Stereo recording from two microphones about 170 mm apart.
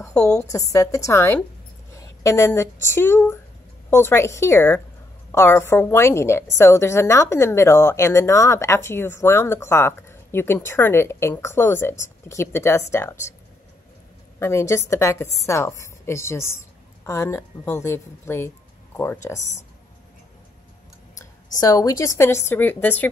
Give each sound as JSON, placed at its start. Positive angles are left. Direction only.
{"t": 0.1, "sound": "a woman's voice", "side_deg": 5}
{"t": 0.4, "sound": "a woman's voice", "side_deg": 20}
{"t": 14.4, "sound": "a woman's voice", "side_deg": 15}
{"t": 21.2, "sound": "a woman's voice", "side_deg": 20}